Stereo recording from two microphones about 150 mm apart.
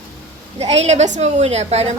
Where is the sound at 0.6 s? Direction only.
45° right (ahead or behind).